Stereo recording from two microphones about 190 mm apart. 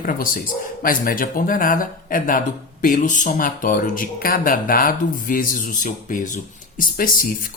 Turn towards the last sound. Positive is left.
turn(degrees=45)  # may be behind; listen again after turning